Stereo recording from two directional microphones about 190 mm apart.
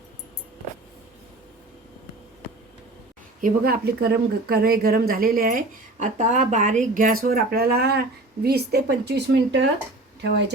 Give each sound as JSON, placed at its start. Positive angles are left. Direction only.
{"t": 3.4, "sound": "a woman's voice", "side_deg": -50}